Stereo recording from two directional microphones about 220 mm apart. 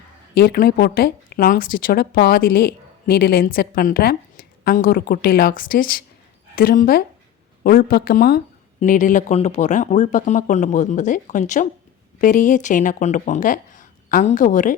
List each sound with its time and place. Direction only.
0.3 s speech: 40° left (ahead or behind)